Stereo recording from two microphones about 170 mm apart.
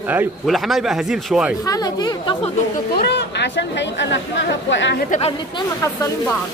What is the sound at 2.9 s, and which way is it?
Speech, 80° left.